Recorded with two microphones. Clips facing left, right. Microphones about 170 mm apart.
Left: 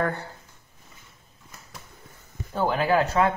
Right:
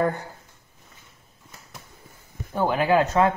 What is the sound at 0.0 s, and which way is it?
Speech, 15° right (ahead or behind).